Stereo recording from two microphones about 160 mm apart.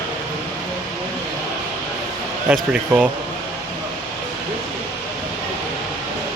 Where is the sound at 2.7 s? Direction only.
10° right (ahead or behind).